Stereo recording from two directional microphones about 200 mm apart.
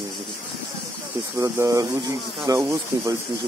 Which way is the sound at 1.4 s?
15° right (ahead or behind).